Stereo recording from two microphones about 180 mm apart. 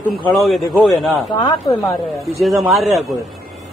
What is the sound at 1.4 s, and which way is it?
Speech, 20° left (ahead or behind).